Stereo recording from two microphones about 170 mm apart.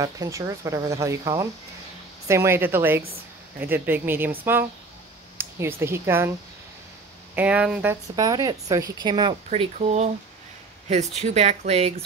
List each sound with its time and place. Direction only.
0.0 s speech: 20° right (ahead or behind)
7.3 s speech: 5° right (ahead or behind)
8.2 s speech: 20° right (ahead or behind)
9.5 s speech: 40° right (ahead or behind)
11.1 s speech: 40° right (ahead or behind)